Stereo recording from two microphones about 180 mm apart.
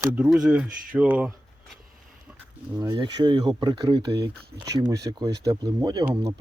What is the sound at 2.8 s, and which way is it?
Speech, 20° right (ahead or behind).